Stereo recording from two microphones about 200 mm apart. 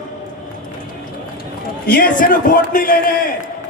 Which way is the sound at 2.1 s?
45° left (ahead or behind).